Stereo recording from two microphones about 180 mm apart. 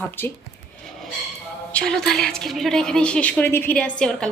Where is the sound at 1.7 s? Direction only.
5° left (ahead or behind).